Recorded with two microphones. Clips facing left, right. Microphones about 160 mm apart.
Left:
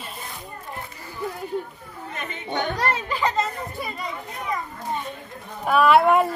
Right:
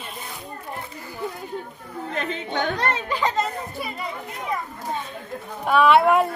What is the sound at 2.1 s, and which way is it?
Speech, 90° right.